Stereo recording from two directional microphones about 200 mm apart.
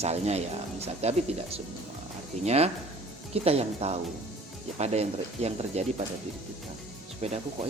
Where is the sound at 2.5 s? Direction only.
30° right (ahead or behind).